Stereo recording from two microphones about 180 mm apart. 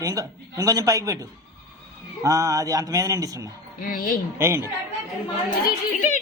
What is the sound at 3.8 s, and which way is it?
Speech, 50° left (ahead or behind).